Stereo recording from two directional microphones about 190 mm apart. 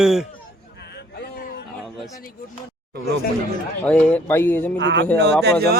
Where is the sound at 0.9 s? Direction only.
55° left (ahead or behind).